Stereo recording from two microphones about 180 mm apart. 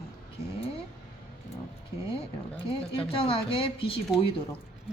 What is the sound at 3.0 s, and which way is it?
A woman's voice, 30° left (ahead or behind).